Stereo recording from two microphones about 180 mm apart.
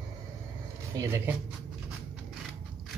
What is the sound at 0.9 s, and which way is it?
Speech, 15° right (ahead or behind).